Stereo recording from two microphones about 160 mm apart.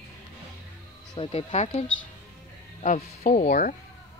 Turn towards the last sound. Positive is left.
turn(degrees=55)  # may be behind; listen again after turning